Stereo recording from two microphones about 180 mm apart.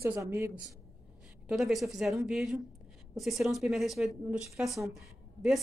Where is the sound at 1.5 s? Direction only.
Centre (ahead or behind).